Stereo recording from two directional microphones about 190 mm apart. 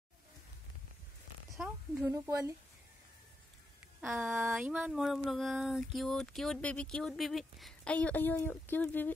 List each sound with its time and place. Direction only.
1.5 s speech: centre (ahead or behind)
2.0 s speech: 15° right (ahead or behind)
4.1 s a sound: centre (ahead or behind)